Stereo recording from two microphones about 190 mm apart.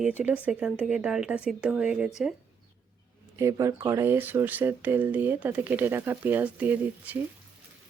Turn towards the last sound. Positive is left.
turn(degrees=-10)  # may be behind; listen again after turning